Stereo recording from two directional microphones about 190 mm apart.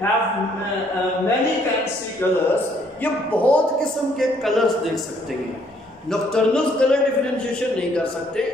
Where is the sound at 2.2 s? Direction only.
15° left (ahead or behind).